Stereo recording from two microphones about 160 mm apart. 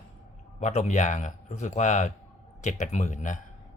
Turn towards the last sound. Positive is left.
turn(degrees=50)  # may be behind; listen again after turning